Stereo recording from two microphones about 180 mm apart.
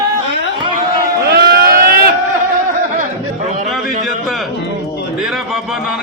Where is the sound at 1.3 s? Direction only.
60° right (ahead or behind).